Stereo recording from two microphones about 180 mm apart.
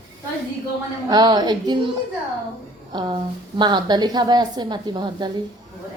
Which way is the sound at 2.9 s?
25° right (ahead or behind).